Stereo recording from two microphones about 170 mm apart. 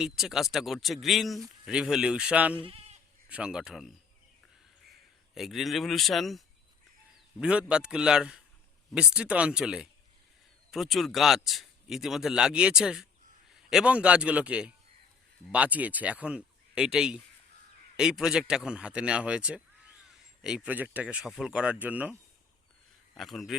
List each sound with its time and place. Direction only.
0.0 s speech: centre (ahead or behind)
2.6 s speech: 35° right (ahead or behind)
3.2 s speech: 5° right (ahead or behind)
5.3 s speech: centre (ahead or behind)
23.1 s speech: centre (ahead or behind)